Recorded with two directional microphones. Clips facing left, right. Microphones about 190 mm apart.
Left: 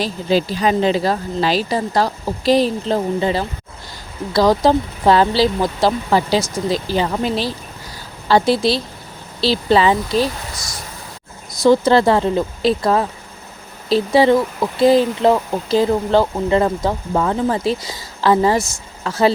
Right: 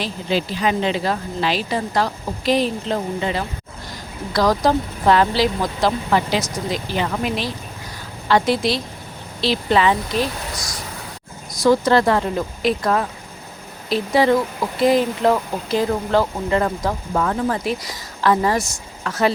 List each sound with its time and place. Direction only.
0.0 s speech: 40° left (ahead or behind)
11.5 s speech: 25° left (ahead or behind)